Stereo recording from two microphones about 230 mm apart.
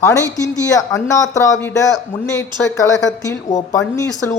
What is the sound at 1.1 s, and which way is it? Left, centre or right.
Speech, centre.